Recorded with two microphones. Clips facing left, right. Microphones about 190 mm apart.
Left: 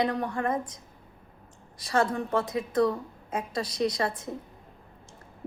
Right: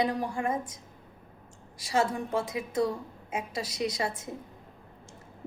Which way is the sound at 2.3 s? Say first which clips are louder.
Left 3 dB; 60° left (ahead or behind).